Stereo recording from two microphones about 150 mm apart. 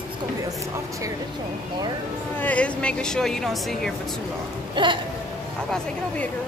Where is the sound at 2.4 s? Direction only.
10° left (ahead or behind).